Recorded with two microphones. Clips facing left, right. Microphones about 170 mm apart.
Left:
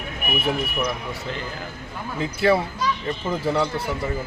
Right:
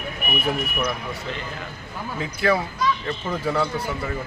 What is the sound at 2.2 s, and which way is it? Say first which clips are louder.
Speech: left 3 dB; 30° left (ahead or behind).